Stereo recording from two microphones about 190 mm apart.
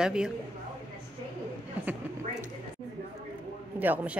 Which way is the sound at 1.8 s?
10° right (ahead or behind).